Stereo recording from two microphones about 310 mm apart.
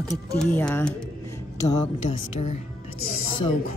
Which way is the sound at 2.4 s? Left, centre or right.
Left.